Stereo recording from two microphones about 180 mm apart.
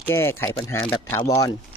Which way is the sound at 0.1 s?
15° left (ahead or behind).